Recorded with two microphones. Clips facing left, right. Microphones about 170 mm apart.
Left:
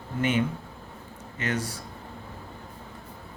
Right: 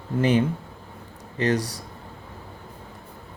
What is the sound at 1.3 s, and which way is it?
Speech, 35° right (ahead or behind).